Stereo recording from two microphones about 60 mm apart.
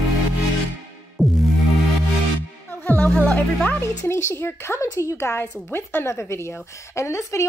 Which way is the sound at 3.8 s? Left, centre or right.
Left.